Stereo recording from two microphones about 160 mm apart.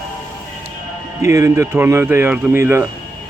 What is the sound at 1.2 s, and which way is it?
Speech, 20° right (ahead or behind).